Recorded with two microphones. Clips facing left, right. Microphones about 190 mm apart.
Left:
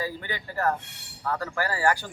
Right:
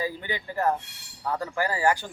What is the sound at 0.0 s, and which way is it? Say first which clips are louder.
Speech: right 2 dB; 15° right (ahead or behind).